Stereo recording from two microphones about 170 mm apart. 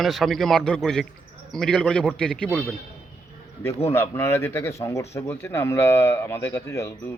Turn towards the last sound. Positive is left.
turn(degrees=15)  # may be behind; listen again after turning